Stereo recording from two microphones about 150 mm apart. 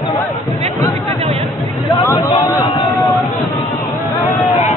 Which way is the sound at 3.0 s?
Centre (ahead or behind).